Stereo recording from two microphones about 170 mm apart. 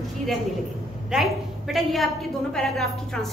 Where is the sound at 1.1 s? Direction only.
Centre (ahead or behind).